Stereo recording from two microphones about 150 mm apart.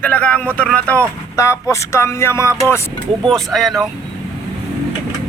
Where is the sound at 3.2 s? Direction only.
Centre (ahead or behind).